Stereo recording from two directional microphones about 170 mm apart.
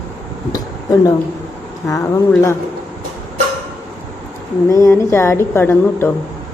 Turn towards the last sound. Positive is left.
turn(degrees=15)  # may be behind; listen again after turning